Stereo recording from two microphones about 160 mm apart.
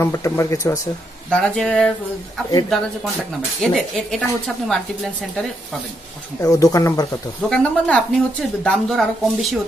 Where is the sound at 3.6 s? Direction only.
5° left (ahead or behind).